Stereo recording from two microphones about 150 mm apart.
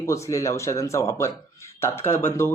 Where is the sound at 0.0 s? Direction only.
20° left (ahead or behind).